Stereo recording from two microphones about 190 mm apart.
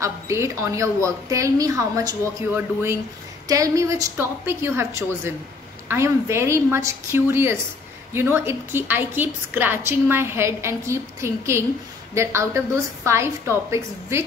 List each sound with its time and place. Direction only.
0.0 s a woman's voice: 15° right (ahead or behind)